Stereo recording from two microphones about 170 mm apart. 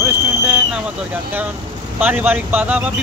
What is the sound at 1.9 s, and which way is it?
Speech, 10° right (ahead or behind).